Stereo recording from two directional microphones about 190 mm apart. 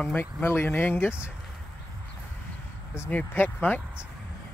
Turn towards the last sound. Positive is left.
turn(degrees=10)  # may be behind; listen again after turning